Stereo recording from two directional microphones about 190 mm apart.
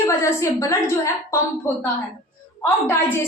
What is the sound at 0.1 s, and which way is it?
A woman's voice, 15° left (ahead or behind).